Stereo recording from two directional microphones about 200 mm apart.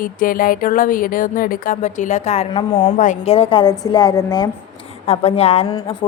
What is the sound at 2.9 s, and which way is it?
A woman's voice, 35° left (ahead or behind).